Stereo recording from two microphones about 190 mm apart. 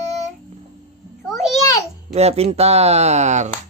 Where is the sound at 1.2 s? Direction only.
15° left (ahead or behind).